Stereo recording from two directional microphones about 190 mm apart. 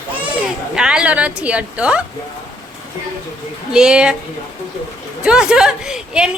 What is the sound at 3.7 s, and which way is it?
Speech, 5° right (ahead or behind).